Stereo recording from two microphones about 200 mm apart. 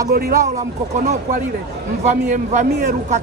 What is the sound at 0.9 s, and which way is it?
A man's voice, 35° right (ahead or behind).